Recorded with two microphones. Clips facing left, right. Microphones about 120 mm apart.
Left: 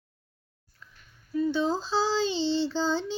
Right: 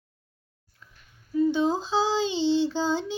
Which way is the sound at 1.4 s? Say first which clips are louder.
Right 3 dB; 15° right (ahead or behind).